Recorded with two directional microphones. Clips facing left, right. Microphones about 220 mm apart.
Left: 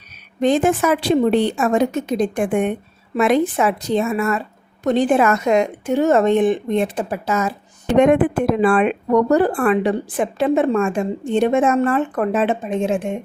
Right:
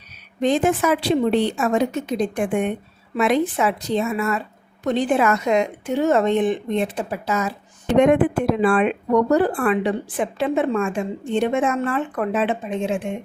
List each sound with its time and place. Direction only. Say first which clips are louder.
0.4 s a woman's voice: left 2 dB; 50° left (ahead or behind)